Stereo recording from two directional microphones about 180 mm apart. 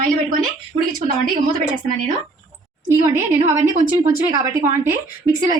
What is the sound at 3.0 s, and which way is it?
A woman's voice, 15° right (ahead or behind).